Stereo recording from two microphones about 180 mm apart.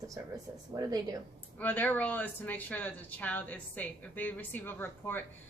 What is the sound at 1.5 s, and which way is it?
Speech, 10° left (ahead or behind).